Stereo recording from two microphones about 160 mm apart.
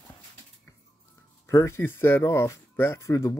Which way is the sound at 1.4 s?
15° left (ahead or behind).